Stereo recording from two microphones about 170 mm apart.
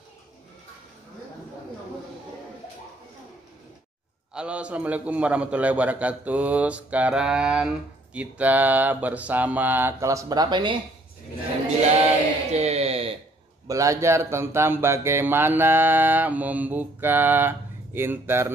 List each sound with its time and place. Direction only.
4.3 s a man's voice: 5° right (ahead or behind); by 10.8 s 25° right (ahead or behind)
12.4 s music: 40° right (ahead or behind)
13.7 s a man's voice: 20° right (ahead or behind)